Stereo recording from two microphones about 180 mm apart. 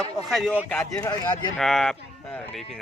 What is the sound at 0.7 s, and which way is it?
Speech, 15° left (ahead or behind).